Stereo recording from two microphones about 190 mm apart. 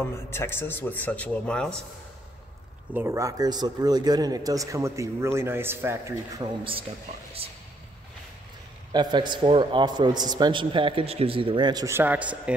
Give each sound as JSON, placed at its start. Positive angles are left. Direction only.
{"t": 0.1, "sound": "a man's voice", "side_deg": 15}
{"t": 2.9, "sound": "speech", "side_deg": -15}
{"t": 8.9, "sound": "a man's voice", "side_deg": -25}